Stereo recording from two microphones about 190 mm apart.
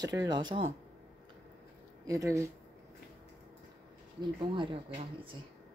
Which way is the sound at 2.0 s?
15° right (ahead or behind).